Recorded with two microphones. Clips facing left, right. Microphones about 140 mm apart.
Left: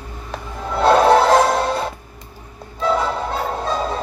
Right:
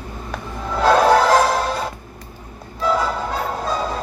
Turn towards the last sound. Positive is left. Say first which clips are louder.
# left 1 dB
turn(degrees=0)  # may be behind; listen again after turning